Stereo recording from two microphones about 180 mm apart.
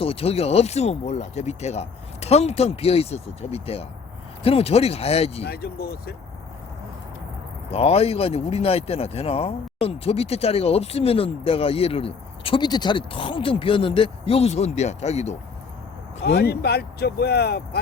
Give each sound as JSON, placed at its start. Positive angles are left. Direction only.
{"t": 0.0, "sound": "speech", "side_deg": 30}
{"t": 5.4, "sound": "speech", "side_deg": 60}
{"t": 7.7, "sound": "speech", "side_deg": 35}
{"t": 16.2, "sound": "speech", "side_deg": 65}